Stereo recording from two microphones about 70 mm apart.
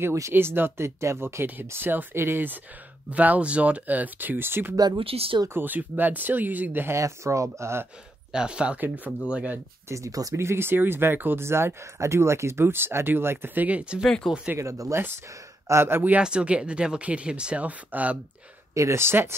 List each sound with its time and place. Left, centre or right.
0.0 s speech: right
0.3 s speech: right
6.9 s speech: right
8.3 s speech: centre
9.8 s speech: right
10.3 s speech: right
13.7 s speech: centre
14.2 s speech: centre
14.6 s speech: right
16.2 s speech: centre
18.8 s speech: right